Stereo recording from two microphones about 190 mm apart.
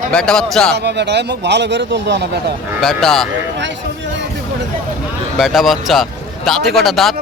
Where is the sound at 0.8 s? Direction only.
65° right (ahead or behind).